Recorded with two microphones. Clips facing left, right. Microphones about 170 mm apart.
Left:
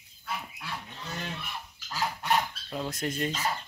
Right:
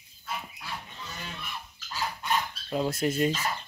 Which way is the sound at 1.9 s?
75° left (ahead or behind).